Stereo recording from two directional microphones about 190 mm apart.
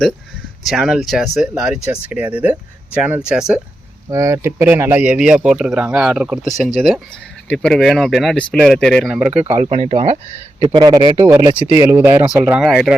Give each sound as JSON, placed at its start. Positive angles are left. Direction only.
{"t": 0.6, "sound": "speech", "side_deg": 0}
{"t": 4.1, "sound": "speech", "side_deg": -15}
{"t": 9.1, "sound": "speech", "side_deg": -5}
{"t": 9.6, "sound": "a man's voice", "side_deg": -35}
{"t": 11.2, "sound": "speech", "side_deg": -10}